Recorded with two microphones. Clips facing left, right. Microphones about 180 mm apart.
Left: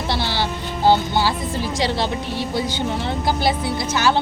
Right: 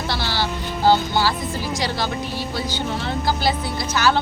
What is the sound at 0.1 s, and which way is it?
Music, 20° left (ahead or behind).